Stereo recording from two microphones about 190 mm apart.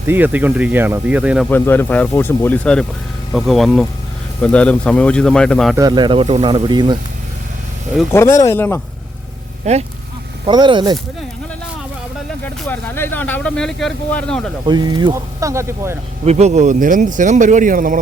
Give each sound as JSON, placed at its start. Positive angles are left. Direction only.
{"t": 0.1, "sound": "speech", "side_deg": -10}
{"t": 1.5, "sound": "speech", "side_deg": 10}
{"t": 5.7, "sound": "speech", "side_deg": -20}
{"t": 8.1, "sound": "speech", "side_deg": 15}
{"t": 9.7, "sound": "speech", "side_deg": -35}
{"t": 10.4, "sound": "speech", "side_deg": -25}
{"t": 12.6, "sound": "speech", "side_deg": 10}
{"t": 14.7, "sound": "speech", "side_deg": -25}
{"t": 16.2, "sound": "speech", "side_deg": -35}